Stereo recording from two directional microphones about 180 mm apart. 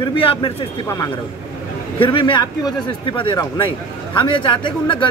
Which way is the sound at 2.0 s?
30° left (ahead or behind).